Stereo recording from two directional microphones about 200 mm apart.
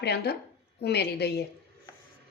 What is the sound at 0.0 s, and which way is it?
A woman's voice, 55° left (ahead or behind).